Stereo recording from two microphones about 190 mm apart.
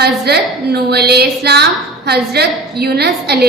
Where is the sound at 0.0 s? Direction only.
60° right (ahead or behind).